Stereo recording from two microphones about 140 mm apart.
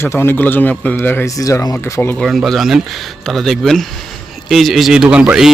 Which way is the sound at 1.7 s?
15° left (ahead or behind).